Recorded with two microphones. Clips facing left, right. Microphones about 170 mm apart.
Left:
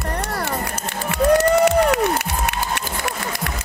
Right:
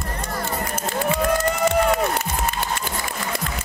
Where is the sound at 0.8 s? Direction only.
70° left (ahead or behind).